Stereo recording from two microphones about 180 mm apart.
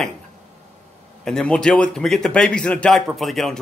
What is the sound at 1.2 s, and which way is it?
Speech, 5° left (ahead or behind).